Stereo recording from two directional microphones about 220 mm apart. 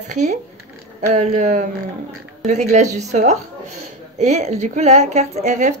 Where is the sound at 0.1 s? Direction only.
30° right (ahead or behind).